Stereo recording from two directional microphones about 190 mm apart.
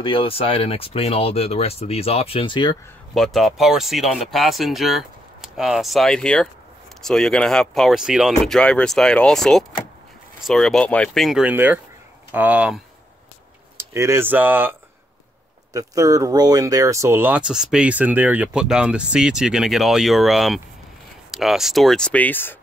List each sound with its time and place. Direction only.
0.0 s speech: 30° left (ahead or behind)
3.2 s speech: centre (ahead or behind)